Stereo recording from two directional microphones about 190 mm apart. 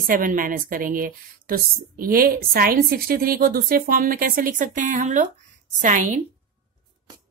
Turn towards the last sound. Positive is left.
turn(degrees=-40)  # may be behind; listen again after turning